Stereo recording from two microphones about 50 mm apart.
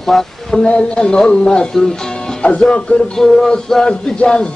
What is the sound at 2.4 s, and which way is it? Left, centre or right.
Speech, left.